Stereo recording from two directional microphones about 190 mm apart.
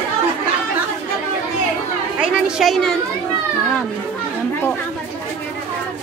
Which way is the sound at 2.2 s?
Centre (ahead or behind).